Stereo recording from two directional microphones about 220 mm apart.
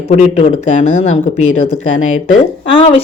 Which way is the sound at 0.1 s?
30° left (ahead or behind).